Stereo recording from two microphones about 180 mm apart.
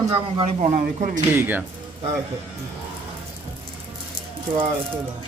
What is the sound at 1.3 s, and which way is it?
Speech, 10° right (ahead or behind).